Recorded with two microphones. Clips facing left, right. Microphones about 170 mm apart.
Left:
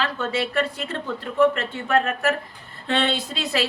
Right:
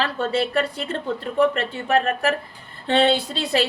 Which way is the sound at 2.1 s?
35° right (ahead or behind).